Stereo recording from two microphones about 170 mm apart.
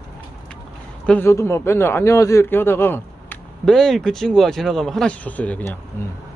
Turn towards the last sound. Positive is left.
turn(degrees=10)  # may be behind; listen again after turning